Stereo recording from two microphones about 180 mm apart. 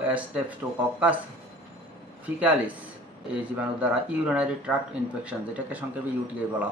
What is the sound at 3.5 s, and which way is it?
Speech, 5° right (ahead or behind).